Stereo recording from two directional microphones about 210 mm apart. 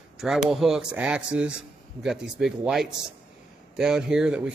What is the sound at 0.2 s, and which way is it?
A man's voice, centre (ahead or behind).